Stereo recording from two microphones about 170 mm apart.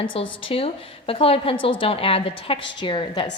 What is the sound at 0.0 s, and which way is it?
A woman's voice, 30° left (ahead or behind).